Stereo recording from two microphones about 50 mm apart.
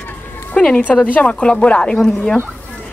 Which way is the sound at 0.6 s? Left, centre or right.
Centre.